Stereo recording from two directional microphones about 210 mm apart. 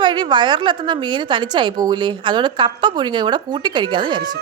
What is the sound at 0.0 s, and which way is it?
A woman's voice, 20° right (ahead or behind).